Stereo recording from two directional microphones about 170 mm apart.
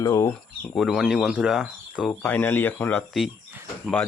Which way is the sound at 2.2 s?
10° left (ahead or behind).